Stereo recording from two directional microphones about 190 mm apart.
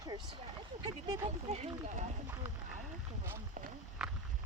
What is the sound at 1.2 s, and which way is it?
Speech, 35° right (ahead or behind).